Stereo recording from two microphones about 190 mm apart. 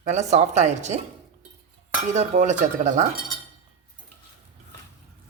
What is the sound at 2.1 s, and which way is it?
Speech, 40° right (ahead or behind).